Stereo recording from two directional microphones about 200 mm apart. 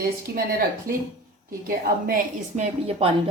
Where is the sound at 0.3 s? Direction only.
50° right (ahead or behind).